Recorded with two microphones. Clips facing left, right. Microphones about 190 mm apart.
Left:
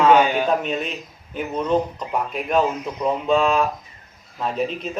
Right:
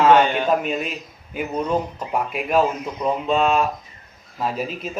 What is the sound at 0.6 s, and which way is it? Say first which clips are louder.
Speech: even; 5° right (ahead or behind).